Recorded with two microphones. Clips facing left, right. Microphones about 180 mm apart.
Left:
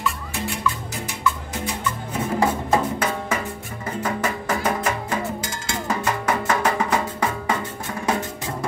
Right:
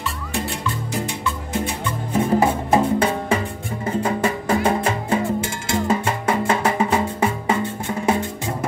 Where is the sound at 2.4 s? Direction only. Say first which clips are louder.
Right 3 dB; 25° right (ahead or behind).